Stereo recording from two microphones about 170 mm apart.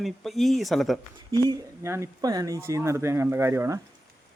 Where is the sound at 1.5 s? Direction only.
15° right (ahead or behind).